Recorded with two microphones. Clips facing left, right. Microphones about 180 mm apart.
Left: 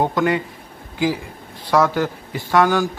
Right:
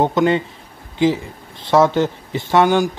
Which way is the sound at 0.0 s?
25° right (ahead or behind).